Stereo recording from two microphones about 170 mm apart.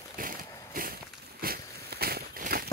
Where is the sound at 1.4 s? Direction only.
65° right (ahead or behind).